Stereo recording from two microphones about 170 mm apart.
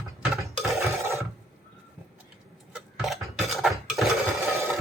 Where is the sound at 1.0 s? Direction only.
15° right (ahead or behind).